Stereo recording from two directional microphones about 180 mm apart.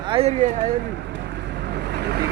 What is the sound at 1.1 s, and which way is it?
Vehicle, 75° right (ahead or behind).